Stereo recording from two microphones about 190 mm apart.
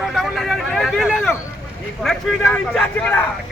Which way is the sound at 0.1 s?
Centre (ahead or behind).